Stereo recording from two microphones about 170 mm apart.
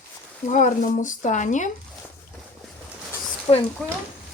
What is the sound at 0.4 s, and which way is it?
Speech, 45° left (ahead or behind).